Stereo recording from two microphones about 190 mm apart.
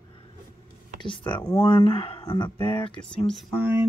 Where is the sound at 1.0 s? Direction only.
25° left (ahead or behind).